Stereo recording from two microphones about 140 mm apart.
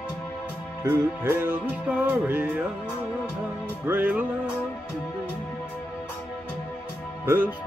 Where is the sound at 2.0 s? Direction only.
15° right (ahead or behind).